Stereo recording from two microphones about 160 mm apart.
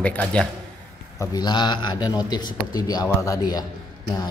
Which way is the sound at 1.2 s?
25° left (ahead or behind).